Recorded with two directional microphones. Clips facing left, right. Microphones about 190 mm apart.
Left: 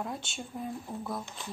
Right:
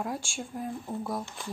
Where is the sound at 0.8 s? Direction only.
15° right (ahead or behind).